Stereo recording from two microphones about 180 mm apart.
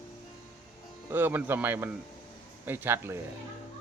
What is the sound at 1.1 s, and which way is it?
Speech, 10° right (ahead or behind).